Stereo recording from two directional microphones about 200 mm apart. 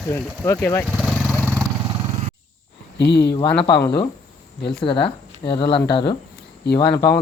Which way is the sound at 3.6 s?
20° left (ahead or behind).